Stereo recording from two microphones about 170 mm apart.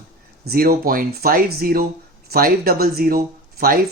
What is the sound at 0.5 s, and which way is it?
Speech, 60° right (ahead or behind).